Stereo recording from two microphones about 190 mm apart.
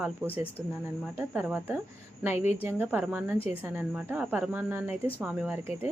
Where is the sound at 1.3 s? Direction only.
5° right (ahead or behind).